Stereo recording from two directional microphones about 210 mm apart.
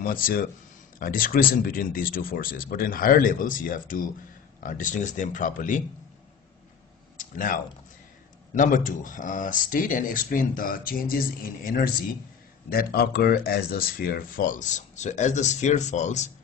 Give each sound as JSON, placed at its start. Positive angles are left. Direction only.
{"t": 0.0, "sound": "speech", "side_deg": 40}
{"t": 7.2, "sound": "speech", "side_deg": 40}